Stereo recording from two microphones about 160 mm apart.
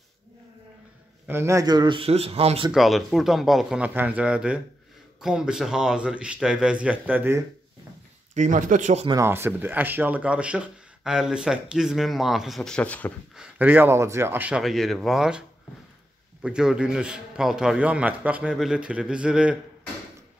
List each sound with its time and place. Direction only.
1.2 s speech: 15° right (ahead or behind); by 2.7 s 40° right (ahead or behind)
2.7 s speech: centre (ahead or behind)
8.4 s speech: 55° right (ahead or behind)
9.0 s speech: 20° right (ahead or behind); by 13.1 s 10° left (ahead or behind)
13.4 s speech: 10° right (ahead or behind)
16.4 s speech: 5° right (ahead or behind)